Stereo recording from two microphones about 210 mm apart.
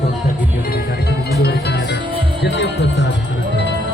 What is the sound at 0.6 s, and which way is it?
Music, 45° left (ahead or behind).